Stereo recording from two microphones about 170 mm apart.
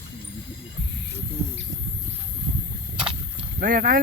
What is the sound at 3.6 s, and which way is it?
Speech, 55° right (ahead or behind).